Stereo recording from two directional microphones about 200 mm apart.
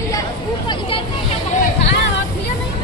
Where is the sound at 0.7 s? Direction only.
25° left (ahead or behind).